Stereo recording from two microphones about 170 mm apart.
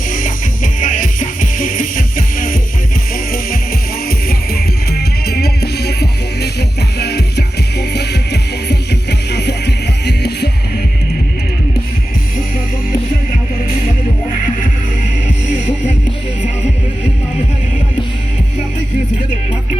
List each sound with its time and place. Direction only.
0.1 s music: 50° left (ahead or behind)
4.3 s music: 65° left (ahead or behind)